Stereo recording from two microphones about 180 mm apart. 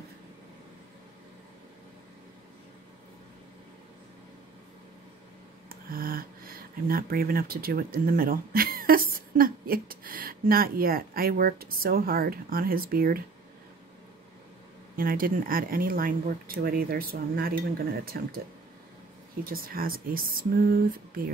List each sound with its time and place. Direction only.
5.7 s speech: 55° right (ahead or behind)
15.0 s speech: 55° right (ahead or behind)
19.5 s speech: 55° right (ahead or behind)